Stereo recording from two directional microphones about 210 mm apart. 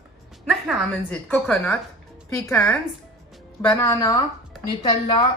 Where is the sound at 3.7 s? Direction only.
10° left (ahead or behind).